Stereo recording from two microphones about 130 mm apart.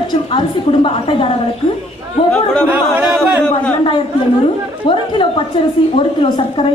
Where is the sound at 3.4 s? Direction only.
10° left (ahead or behind).